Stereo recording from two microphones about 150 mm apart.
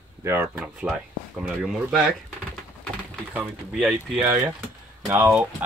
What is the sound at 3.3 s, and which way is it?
Speech, 5° right (ahead or behind).